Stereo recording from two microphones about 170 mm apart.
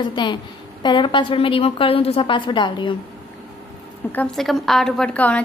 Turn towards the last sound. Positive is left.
turn(degrees=10)  # may be behind; listen again after turning